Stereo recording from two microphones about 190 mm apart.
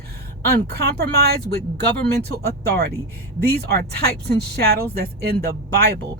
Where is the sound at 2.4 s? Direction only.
55° right (ahead or behind).